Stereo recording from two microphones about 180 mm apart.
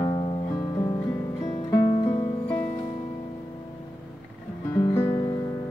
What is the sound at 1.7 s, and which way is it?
Music, 20° left (ahead or behind).